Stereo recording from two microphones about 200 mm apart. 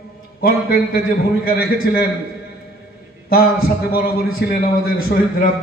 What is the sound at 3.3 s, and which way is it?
A man's voice, 50° left (ahead or behind).